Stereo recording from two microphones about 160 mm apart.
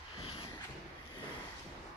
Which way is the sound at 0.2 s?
35° left (ahead or behind).